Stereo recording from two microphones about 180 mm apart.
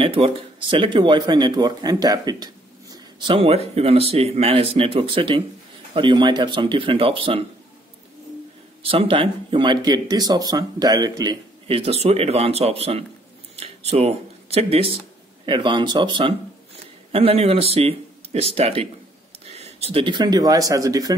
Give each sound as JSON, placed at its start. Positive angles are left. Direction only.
{"t": 0.0, "sound": "speech", "side_deg": -30}
{"t": 8.8, "sound": "speech", "side_deg": -30}